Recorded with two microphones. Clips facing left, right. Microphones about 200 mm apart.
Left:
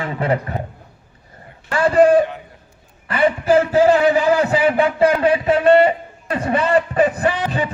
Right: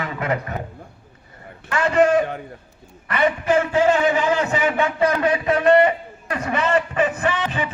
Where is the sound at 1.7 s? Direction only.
35° left (ahead or behind).